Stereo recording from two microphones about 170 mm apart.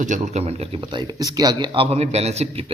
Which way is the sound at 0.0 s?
45° right (ahead or behind).